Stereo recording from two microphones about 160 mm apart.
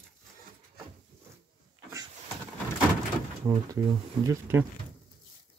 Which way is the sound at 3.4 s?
20° right (ahead or behind).